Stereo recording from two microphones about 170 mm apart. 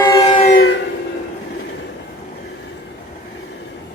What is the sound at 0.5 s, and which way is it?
Train, 90° left.